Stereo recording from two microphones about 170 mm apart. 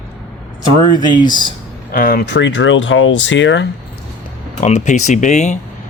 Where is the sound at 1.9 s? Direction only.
60° left (ahead or behind); by 3.7 s 90° left.